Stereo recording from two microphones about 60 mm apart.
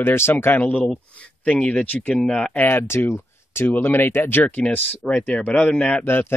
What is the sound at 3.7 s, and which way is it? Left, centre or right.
Speech, left.